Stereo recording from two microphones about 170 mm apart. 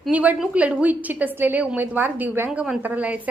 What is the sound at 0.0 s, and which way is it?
A woman's voice, 10° right (ahead or behind).